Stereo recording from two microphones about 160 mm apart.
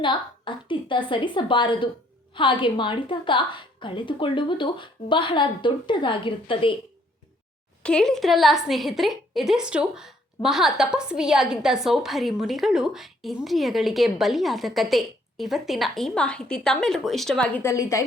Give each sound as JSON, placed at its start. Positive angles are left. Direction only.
{"t": 0.0, "sound": "a woman's voice", "side_deg": 30}
{"t": 7.8, "sound": "a woman's voice", "side_deg": 5}